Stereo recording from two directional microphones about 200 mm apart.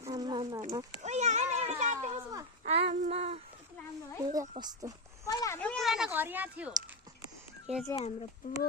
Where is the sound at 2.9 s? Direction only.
35° right (ahead or behind).